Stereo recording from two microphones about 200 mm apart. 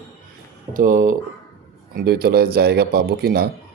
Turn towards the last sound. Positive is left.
turn(degrees=-50)  # may be behind; listen again after turning